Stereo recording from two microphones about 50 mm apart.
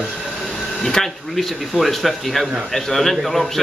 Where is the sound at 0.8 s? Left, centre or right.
Centre.